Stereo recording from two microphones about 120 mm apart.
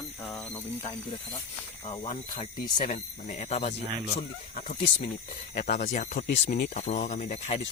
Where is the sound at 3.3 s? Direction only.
70° left (ahead or behind).